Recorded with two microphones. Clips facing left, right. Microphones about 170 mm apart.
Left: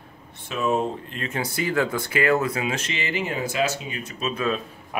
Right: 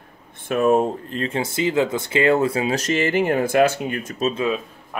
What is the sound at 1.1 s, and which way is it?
Speech, 30° right (ahead or behind).